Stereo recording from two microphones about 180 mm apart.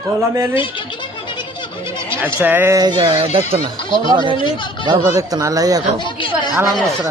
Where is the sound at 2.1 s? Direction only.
10° right (ahead or behind).